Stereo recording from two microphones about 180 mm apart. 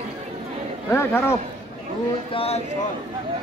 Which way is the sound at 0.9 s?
15° left (ahead or behind).